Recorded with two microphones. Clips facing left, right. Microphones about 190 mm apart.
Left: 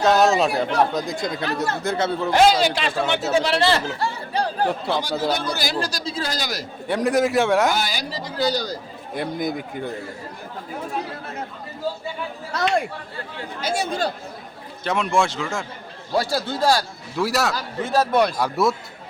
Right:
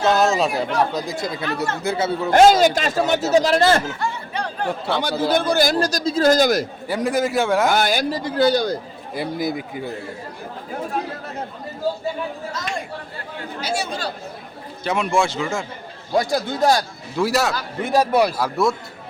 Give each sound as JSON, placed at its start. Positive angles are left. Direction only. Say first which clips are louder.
{"t": 0.0, "sound": "a man's voice", "louder": "left 1 dB", "side_deg": 0}
{"t": 2.3, "sound": "a man's voice", "louder": "right 5 dB", "side_deg": -45}
{"t": 3.8, "sound": "chatter", "louder": "even", "side_deg": 35}
{"t": 4.9, "sound": "speech", "louder": "right 2 dB", "side_deg": -60}
{"t": 5.3, "sound": "a man's voice", "louder": "right 6 dB", "side_deg": -50}
{"t": 6.8, "sound": "speech", "louder": "left 4 dB", "side_deg": 0}
{"t": 7.7, "sound": "speech", "louder": "right 6 dB", "side_deg": -55}
{"t": 9.1, "sound": "speech", "louder": "right 1 dB", "side_deg": -5}
{"t": 13.6, "sound": "speech", "louder": "left 2 dB", "side_deg": 50}
{"t": 14.8, "sound": "speech", "louder": "right 1 dB", "side_deg": 0}
{"t": 16.1, "sound": "a man's voice", "louder": "right 2 dB", "side_deg": -15}
{"t": 17.2, "sound": "speech", "louder": "right 2 dB", "side_deg": 0}
{"t": 17.8, "sound": "a man's voice", "louder": "right 2 dB", "side_deg": -15}